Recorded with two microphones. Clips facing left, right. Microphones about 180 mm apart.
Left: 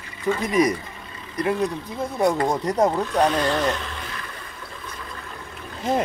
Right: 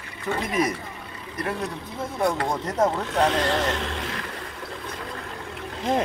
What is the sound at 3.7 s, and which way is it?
Boat, 85° right.